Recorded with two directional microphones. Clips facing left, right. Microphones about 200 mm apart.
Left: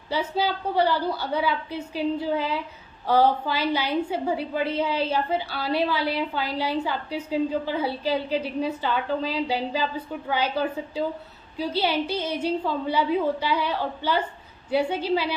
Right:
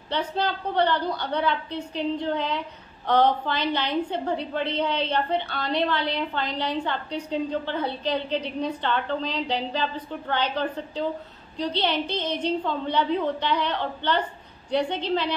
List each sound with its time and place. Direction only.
0.1 s a woman's voice: 5° left (ahead or behind)